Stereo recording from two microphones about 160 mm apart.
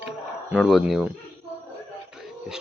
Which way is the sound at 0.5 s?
Centre (ahead or behind).